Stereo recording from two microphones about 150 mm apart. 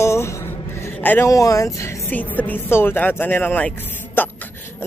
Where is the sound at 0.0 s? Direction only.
20° left (ahead or behind).